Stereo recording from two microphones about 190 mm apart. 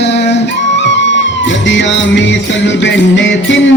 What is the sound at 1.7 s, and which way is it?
Music, 75° left (ahead or behind).